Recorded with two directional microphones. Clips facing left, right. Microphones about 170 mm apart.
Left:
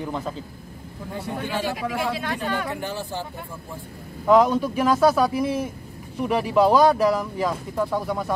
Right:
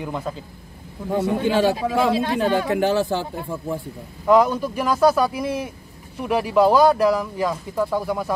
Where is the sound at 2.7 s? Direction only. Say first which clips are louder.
Right 10 dB; 90° right.